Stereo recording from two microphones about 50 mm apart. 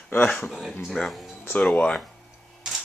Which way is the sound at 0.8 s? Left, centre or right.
Centre.